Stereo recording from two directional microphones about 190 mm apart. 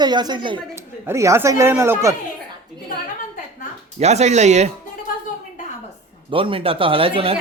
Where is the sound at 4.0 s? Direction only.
35° right (ahead or behind).